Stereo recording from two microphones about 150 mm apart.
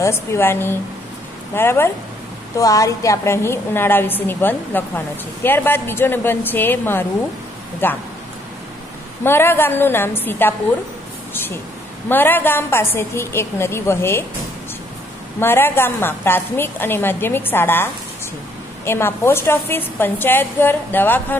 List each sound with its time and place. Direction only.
0.0 s a woman's voice: 20° left (ahead or behind)
9.2 s a woman's voice: 15° left (ahead or behind)
12.1 s a woman's voice: 15° left (ahead or behind)
15.4 s a woman's voice: 15° left (ahead or behind)
18.9 s a woman's voice: 15° left (ahead or behind)